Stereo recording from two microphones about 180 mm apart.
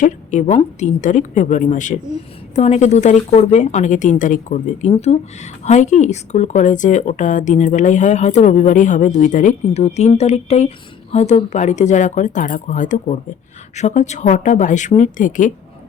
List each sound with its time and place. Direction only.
0.0 s a woman's voice: 40° left (ahead or behind)